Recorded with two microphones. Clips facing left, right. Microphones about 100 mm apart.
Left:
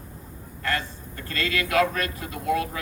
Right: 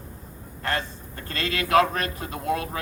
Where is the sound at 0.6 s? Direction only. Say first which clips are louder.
Even; 30° right (ahead or behind).